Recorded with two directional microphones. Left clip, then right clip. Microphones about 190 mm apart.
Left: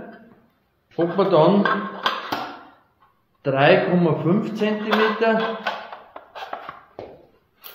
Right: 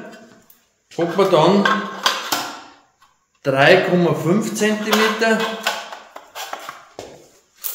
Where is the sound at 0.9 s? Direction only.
5° right (ahead or behind).